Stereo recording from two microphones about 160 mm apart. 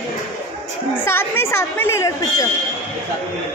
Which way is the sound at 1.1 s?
15° left (ahead or behind).